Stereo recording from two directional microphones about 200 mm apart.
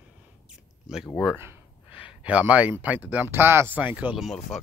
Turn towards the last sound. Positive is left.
turn(degrees=0)  # may be behind; listen again after turning